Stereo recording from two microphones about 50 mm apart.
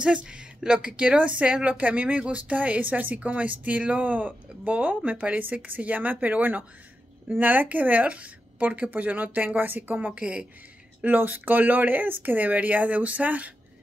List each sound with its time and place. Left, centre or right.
0.0 s a woman's voice: right
10.1 s a woman's voice: right
11.1 s speech: right